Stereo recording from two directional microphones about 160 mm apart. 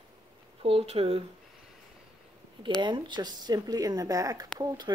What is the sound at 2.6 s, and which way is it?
Speech, 30° right (ahead or behind).